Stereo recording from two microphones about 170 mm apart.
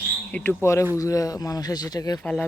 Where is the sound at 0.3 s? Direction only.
10° left (ahead or behind).